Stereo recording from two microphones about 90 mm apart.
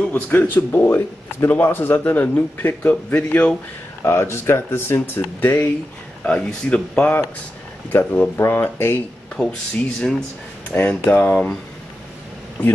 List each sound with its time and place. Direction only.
0.1 s speech: 20° left (ahead or behind)
4.0 s speech: 30° left (ahead or behind)
6.2 s speech: 10° left (ahead or behind)
9.4 s speech: 10° left (ahead or behind)